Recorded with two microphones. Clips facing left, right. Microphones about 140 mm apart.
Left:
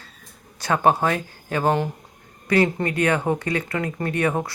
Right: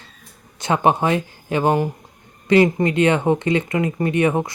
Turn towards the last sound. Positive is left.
turn(degrees=-20)  # may be behind; listen again after turning